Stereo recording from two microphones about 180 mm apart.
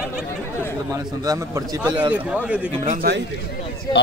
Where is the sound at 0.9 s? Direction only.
20° right (ahead or behind).